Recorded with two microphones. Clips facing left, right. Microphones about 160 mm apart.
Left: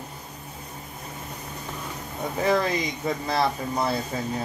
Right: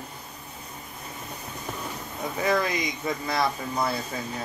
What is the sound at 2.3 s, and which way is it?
Speech, 30° left (ahead or behind).